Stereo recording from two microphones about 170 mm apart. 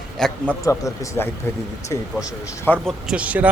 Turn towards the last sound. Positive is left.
turn(degrees=-10)  # may be behind; listen again after turning